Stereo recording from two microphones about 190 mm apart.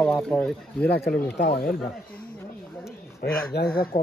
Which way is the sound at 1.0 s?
70° left (ahead or behind).